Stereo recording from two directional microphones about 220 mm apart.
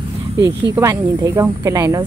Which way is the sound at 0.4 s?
15° right (ahead or behind).